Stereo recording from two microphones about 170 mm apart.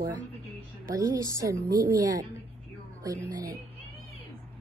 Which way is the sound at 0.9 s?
20° right (ahead or behind).